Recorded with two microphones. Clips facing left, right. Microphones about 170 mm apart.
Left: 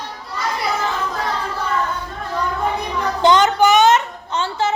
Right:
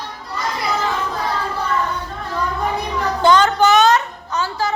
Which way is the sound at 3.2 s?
15° left (ahead or behind).